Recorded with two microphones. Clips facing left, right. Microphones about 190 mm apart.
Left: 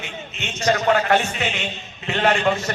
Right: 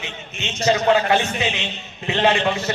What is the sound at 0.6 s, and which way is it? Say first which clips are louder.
A man's voice: right 2 dB; 10° right (ahead or behind).